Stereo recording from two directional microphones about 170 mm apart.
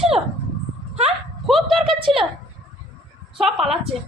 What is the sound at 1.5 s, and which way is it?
Speech, centre (ahead or behind).